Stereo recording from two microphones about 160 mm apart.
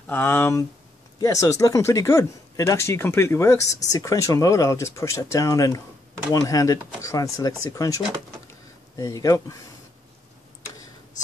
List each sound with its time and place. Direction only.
0.0 s speech: 15° left (ahead or behind)